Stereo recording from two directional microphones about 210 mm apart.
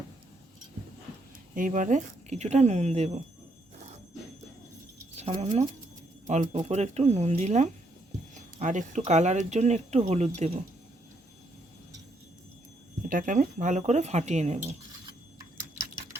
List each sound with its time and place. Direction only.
1.5 s speech: 40° right (ahead or behind)
5.1 s speech: 30° right (ahead or behind)
13.1 s speech: 40° right (ahead or behind)